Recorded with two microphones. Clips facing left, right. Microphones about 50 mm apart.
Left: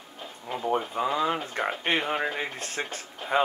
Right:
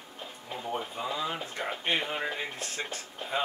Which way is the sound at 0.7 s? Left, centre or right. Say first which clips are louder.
Left 6 dB; left.